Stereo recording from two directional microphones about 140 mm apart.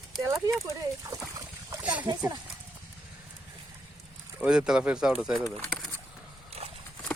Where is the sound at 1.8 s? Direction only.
10° right (ahead or behind).